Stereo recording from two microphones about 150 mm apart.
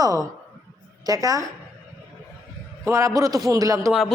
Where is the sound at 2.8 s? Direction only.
20° right (ahead or behind).